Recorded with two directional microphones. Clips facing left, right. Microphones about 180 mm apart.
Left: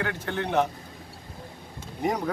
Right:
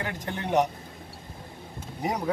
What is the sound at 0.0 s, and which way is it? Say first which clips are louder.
Speech: left 3 dB; 15° right (ahead or behind).